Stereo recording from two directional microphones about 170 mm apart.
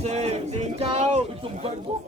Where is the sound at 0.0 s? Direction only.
40° right (ahead or behind).